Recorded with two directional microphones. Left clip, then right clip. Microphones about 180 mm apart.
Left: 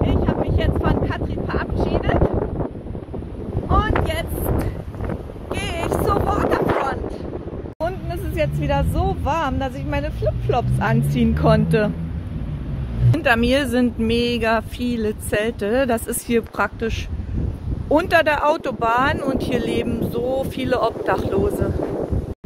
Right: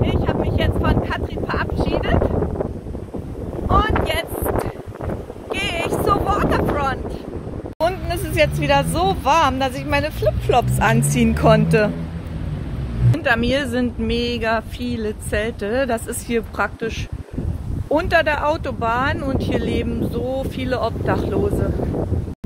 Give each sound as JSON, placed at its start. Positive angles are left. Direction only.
{"t": 0.0, "sound": "a sound", "side_deg": -10}
{"t": 3.7, "sound": "a sound", "side_deg": -5}
{"t": 5.5, "sound": "wind noise", "side_deg": 0}
{"t": 7.8, "sound": "speech", "side_deg": -5}
{"t": 13.1, "sound": "speech", "side_deg": 30}
{"t": 17.9, "sound": "speech", "side_deg": 35}